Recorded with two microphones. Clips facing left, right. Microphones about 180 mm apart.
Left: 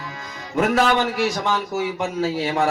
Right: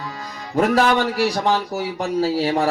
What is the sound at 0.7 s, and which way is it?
Speech, 35° right (ahead or behind).